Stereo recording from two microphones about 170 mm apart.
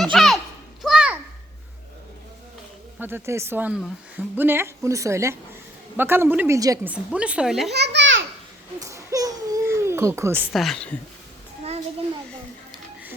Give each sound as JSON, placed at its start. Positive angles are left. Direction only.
{"t": 0.0, "sound": "children playing", "side_deg": 0}
{"t": 0.8, "sound": "a sound", "side_deg": -5}
{"t": 3.0, "sound": "a woman's voice", "side_deg": -15}
{"t": 6.8, "sound": "a woman's voice", "side_deg": -5}
{"t": 7.7, "sound": "a sound", "side_deg": -85}
{"t": 8.8, "sound": "baby cry", "side_deg": -20}
{"t": 10.5, "sound": "a woman's voice", "side_deg": 0}